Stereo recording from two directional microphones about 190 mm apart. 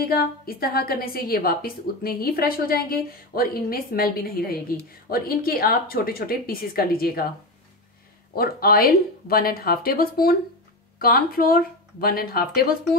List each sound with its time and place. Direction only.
0.0 s a woman's voice: 50° left (ahead or behind)
8.4 s a woman's voice: 50° left (ahead or behind)